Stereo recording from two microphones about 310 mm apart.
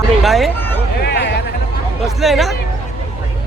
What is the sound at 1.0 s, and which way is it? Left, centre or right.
Music, left.